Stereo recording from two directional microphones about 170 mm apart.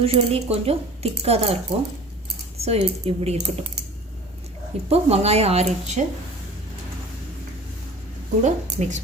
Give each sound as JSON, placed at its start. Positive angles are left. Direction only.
{"t": 0.0, "sound": "speech", "side_deg": -35}
{"t": 2.6, "sound": "speech", "side_deg": -35}
{"t": 4.9, "sound": "speech", "side_deg": -35}
{"t": 8.4, "sound": "a woman's voice", "side_deg": -45}